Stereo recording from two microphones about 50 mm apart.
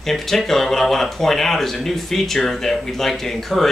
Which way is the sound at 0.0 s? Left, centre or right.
Centre.